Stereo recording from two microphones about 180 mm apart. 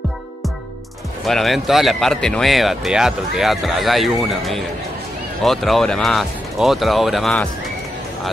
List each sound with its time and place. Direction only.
1.2 s speech: centre (ahead or behind)